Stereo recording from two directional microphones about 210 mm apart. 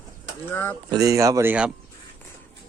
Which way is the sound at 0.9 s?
15° right (ahead or behind).